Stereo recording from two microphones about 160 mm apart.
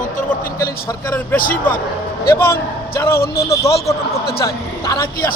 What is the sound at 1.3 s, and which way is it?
Speech, 60° left (ahead or behind).